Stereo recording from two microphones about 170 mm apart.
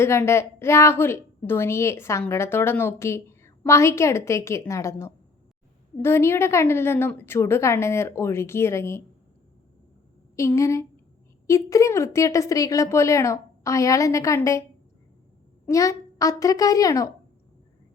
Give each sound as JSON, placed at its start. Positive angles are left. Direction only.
{"t": 0.0, "sound": "a woman's voice", "side_deg": 15}
{"t": 10.3, "sound": "a woman's voice", "side_deg": 15}
{"t": 15.6, "sound": "a child's voice", "side_deg": 20}